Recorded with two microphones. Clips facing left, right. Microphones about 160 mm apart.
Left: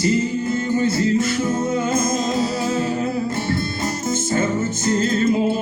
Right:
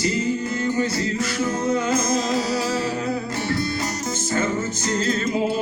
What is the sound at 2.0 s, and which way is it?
Music, 50° left (ahead or behind).